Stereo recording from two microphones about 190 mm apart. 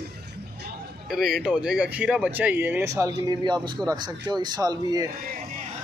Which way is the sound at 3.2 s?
20° right (ahead or behind).